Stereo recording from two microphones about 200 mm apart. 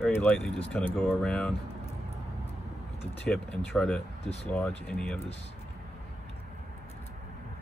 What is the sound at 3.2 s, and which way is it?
Speech, 5° left (ahead or behind).